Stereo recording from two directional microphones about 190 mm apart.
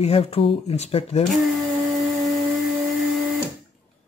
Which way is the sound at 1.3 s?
Centre (ahead or behind).